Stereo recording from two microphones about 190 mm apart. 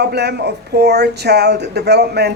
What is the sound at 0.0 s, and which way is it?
Speech, 60° right (ahead or behind).